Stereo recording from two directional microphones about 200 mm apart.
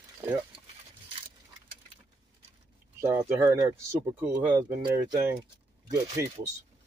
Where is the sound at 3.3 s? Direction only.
15° right (ahead or behind).